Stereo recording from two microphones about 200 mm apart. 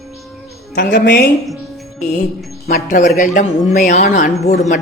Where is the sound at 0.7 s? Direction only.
50° left (ahead or behind).